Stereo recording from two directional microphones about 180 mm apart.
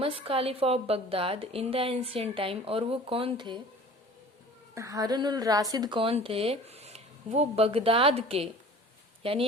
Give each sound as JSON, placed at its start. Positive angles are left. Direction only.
{"t": 0.0, "sound": "a woman's voice", "side_deg": -30}
{"t": 4.7, "sound": "a woman's voice", "side_deg": -20}